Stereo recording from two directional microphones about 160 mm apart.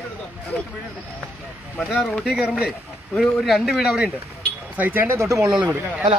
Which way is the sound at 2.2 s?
5° right (ahead or behind).